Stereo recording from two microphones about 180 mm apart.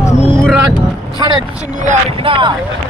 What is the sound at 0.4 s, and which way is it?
Music, centre (ahead or behind).